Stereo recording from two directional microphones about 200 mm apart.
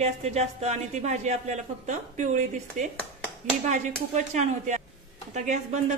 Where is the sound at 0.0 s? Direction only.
35° right (ahead or behind).